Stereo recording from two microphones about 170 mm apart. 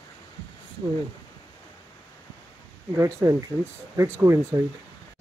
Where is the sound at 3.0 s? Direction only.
20° right (ahead or behind).